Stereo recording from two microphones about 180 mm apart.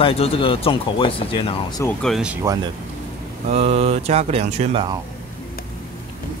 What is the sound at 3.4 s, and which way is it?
Speech, 35° right (ahead or behind).